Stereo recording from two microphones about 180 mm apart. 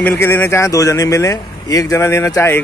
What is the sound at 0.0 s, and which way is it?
Speech, 10° left (ahead or behind).